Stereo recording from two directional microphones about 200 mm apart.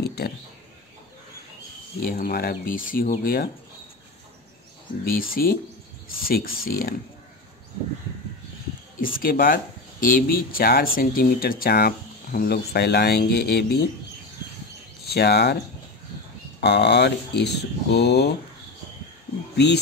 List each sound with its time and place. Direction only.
0.0 s a sound: 55° left (ahead or behind)
2.0 s speech: 50° left (ahead or behind)
5.3 s speech: 45° left (ahead or behind)
9.0 s speech: 45° left (ahead or behind)
15.0 s speech: 55° left (ahead or behind)
16.6 s speech: 55° left (ahead or behind)
19.5 s speech: 55° left (ahead or behind)